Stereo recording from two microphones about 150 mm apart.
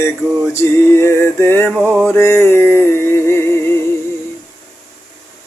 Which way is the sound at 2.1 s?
15° left (ahead or behind).